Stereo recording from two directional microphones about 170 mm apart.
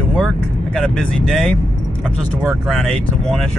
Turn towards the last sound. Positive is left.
turn(degrees=0)  # may be behind; listen again after turning